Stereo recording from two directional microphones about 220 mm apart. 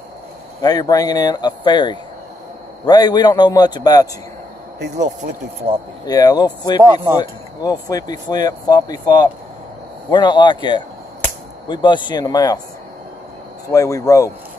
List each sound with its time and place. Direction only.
0.6 s a man's voice: 15° left (ahead or behind)
4.9 s speech: 35° right (ahead or behind)
6.0 s a man's voice: 15° left (ahead or behind)
13.7 s speech: 15° left (ahead or behind)